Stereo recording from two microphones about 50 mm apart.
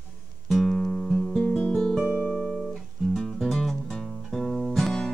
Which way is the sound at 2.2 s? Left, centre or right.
Left.